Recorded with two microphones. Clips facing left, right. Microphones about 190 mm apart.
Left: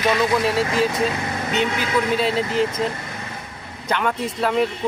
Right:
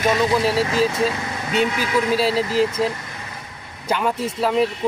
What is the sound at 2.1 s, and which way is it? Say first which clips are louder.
Speech: right 3 dB; 5° right (ahead or behind).